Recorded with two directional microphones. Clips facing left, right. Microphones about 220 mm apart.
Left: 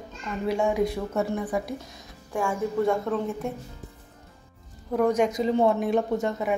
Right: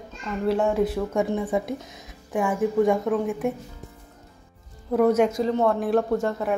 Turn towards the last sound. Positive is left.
turn(degrees=0)  # may be behind; listen again after turning